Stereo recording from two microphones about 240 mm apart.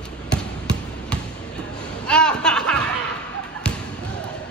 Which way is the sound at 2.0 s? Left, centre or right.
Centre.